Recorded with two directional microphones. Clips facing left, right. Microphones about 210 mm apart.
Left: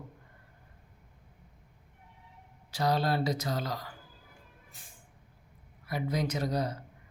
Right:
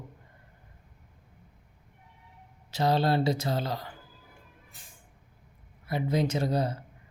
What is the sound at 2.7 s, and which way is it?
Speech, 25° right (ahead or behind).